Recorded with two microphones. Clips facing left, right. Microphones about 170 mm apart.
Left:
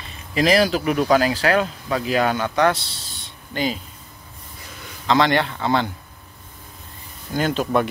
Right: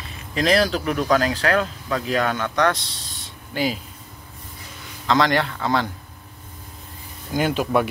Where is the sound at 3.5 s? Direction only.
5° right (ahead or behind).